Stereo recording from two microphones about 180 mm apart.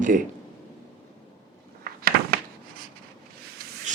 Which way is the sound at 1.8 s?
55° right (ahead or behind).